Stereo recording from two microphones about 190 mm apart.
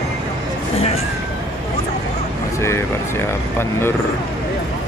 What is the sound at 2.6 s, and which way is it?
Vehicle, 15° left (ahead or behind).